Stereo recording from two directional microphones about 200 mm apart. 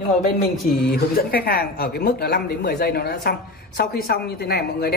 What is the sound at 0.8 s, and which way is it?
Speech, 50° left (ahead or behind).